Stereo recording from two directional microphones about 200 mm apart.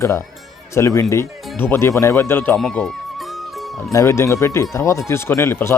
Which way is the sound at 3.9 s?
15° left (ahead or behind).